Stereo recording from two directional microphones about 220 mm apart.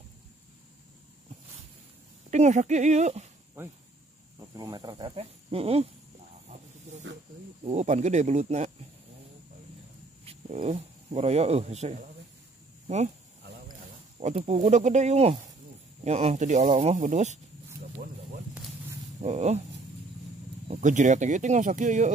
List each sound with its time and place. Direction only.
2.3 s speech: 30° right (ahead or behind)
4.4 s speech: 15° right (ahead or behind)
6.5 s hiss: 30° right (ahead or behind)
7.6 s speech: 30° right (ahead or behind)
10.2 s speech: 30° right (ahead or behind)
14.2 s speech: 30° right (ahead or behind)
19.2 s speech: 30° right (ahead or behind)
20.6 s speech: 30° right (ahead or behind)